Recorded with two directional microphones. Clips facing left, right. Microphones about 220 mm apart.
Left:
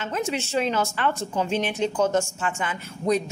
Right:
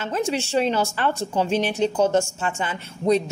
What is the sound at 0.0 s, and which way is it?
A woman's voice, 35° right (ahead or behind).